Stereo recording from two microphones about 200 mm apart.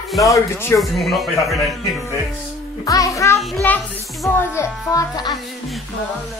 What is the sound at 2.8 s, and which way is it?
A child's voice, 15° left (ahead or behind).